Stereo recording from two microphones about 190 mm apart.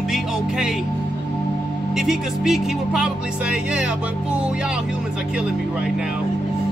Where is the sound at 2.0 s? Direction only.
Centre (ahead or behind).